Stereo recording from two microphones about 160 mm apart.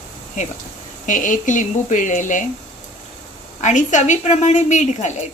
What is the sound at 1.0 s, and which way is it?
A woman's voice, 55° left (ahead or behind).